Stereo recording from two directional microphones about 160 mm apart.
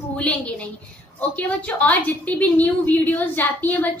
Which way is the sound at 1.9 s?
10° left (ahead or behind).